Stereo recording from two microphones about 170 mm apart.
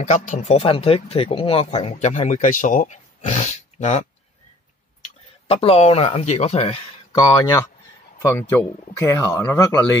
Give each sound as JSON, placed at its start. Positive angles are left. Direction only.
{"t": 0.0, "sound": "speech", "side_deg": 45}
{"t": 5.5, "sound": "speech", "side_deg": 35}
{"t": 7.1, "sound": "speech", "side_deg": 20}